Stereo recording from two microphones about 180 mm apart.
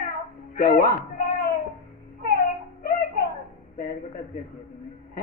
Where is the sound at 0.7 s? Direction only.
55° left (ahead or behind).